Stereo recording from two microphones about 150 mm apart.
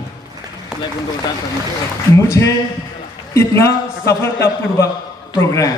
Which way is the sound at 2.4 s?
20° left (ahead or behind).